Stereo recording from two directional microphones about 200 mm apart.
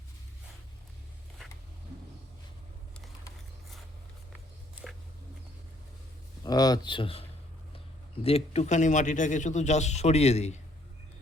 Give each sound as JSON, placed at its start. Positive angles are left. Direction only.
{"t": 6.4, "sound": "speech", "side_deg": 20}